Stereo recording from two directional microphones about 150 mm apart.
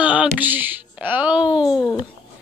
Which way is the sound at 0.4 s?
10° right (ahead or behind).